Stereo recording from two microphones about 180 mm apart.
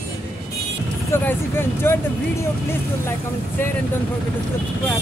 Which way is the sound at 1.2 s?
10° left (ahead or behind).